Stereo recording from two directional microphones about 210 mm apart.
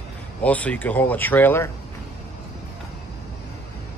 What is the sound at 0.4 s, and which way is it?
Speech, 5° left (ahead or behind).